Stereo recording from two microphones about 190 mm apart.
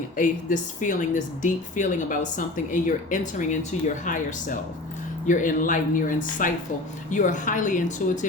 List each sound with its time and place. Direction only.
0.2 s a woman's voice: 40° left (ahead or behind)